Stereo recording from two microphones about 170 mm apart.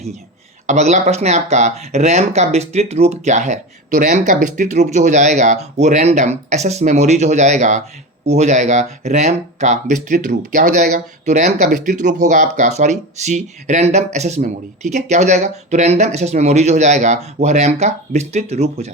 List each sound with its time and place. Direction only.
0.7 s speech: 45° right (ahead or behind); by 4.3 s 65° right (ahead or behind)
4.3 s speech: 50° right (ahead or behind)